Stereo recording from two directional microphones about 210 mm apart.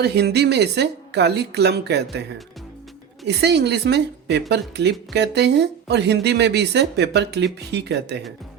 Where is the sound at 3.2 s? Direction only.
55° right (ahead or behind).